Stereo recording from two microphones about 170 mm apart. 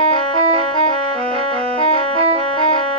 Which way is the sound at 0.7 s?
30° left (ahead or behind).